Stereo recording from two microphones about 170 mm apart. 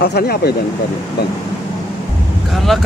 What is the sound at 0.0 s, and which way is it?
Speech, 65° left (ahead or behind).